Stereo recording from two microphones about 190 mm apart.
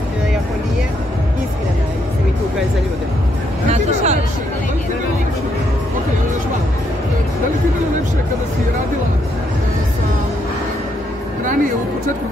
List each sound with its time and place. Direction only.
3.7 s speech: 35° right (ahead or behind)